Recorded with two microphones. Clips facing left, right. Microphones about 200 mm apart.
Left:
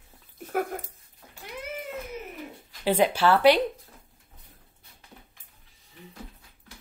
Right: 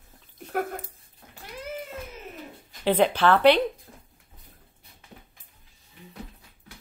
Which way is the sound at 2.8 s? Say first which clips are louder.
Right 1 dB; 10° left (ahead or behind).